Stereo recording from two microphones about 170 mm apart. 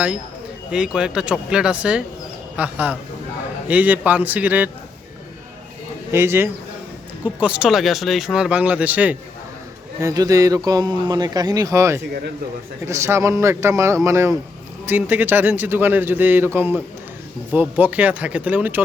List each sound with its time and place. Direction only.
0.7 s a man's voice: 5° right (ahead or behind)
6.1 s a man's voice: 15° right (ahead or behind)
10.0 s a man's voice: 20° right (ahead or behind)